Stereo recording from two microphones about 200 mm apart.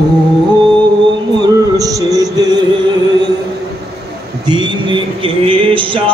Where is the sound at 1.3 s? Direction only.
15° right (ahead or behind).